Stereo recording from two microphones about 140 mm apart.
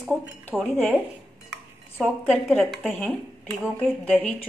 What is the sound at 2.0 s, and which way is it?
Speech, 5° right (ahead or behind).